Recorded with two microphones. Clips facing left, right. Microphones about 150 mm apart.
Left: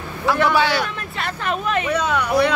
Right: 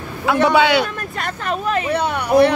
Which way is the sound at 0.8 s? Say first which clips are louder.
Right 2 dB; 40° right (ahead or behind).